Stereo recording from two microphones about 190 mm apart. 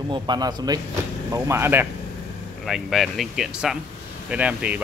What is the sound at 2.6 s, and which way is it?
Speech, centre (ahead or behind).